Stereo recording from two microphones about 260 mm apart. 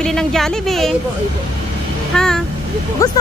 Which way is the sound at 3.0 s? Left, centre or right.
Centre.